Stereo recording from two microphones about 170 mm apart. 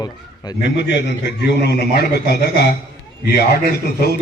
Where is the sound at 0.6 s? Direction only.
90° left.